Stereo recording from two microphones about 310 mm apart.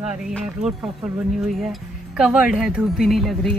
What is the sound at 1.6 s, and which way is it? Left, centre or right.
Speech, centre.